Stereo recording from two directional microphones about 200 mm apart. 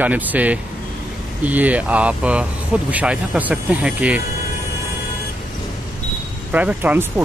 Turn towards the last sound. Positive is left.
turn(degrees=-10)  # may be behind; listen again after turning